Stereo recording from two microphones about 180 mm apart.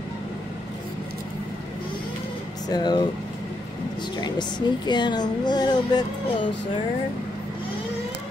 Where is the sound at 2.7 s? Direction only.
25° left (ahead or behind).